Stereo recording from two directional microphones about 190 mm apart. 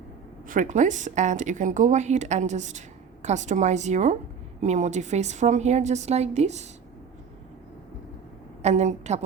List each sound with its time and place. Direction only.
0.4 s a woman's voice: 45° right (ahead or behind)
8.6 s a woman's voice: 35° right (ahead or behind)